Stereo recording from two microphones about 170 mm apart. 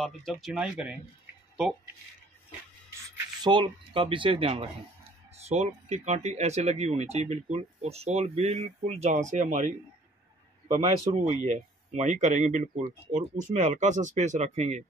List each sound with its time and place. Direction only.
0.0 s speech: centre (ahead or behind)
3.4 s speech: 30° right (ahead or behind)